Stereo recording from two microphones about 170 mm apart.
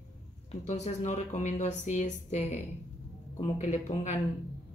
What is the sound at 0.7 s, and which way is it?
Speech, 40° left (ahead or behind).